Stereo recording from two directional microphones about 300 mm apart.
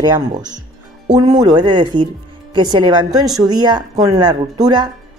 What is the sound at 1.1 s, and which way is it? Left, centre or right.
A woman's voice, centre.